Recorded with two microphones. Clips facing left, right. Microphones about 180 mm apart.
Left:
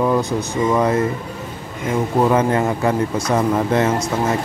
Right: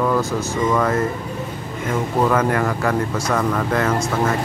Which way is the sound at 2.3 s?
20° left (ahead or behind).